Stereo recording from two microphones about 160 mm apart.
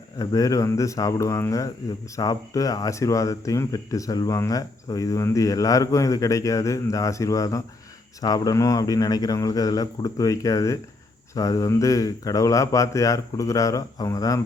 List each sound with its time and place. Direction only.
0.2 s speech: 20° left (ahead or behind)